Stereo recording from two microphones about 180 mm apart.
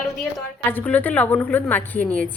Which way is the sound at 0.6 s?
10° left (ahead or behind).